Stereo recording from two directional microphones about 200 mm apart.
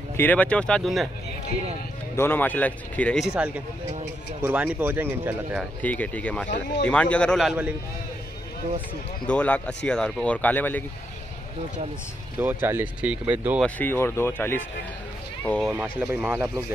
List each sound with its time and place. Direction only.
0.2 s speech: 10° left (ahead or behind)
2.1 s speech: 10° left (ahead or behind); by 5.7 s 10° right (ahead or behind)
5.8 s speech: 5° left (ahead or behind)
6.5 s speech: 60° left (ahead or behind)
6.9 s speech: 5° left (ahead or behind)
9.3 s speech: 5° left (ahead or behind)
12.4 s speech: 10° right (ahead or behind)
13.7 s speech: 10° left (ahead or behind)
16.0 s speech: 10° right (ahead or behind)